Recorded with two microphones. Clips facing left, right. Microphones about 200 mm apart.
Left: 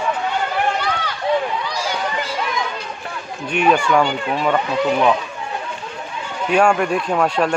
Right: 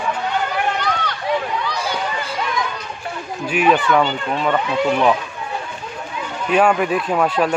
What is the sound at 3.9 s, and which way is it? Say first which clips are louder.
Speech: even; 10° left (ahead or behind).